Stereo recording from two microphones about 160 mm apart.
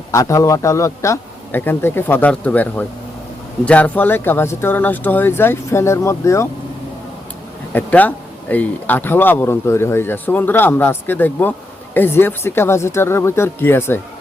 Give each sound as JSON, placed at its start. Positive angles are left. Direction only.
{"t": 0.1, "sound": "speech", "side_deg": 20}
{"t": 7.7, "sound": "speech", "side_deg": 10}